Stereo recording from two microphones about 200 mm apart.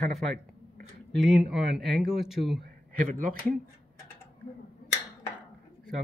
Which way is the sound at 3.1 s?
40° right (ahead or behind).